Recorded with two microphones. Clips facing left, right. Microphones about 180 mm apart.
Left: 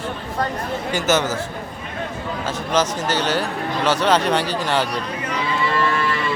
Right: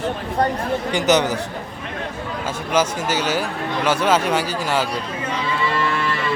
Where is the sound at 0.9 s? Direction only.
15° right (ahead or behind).